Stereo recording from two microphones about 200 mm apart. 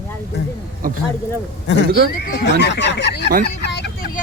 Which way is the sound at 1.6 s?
60° left (ahead or behind).